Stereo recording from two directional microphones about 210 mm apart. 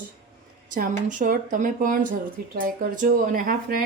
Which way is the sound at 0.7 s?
40° right (ahead or behind).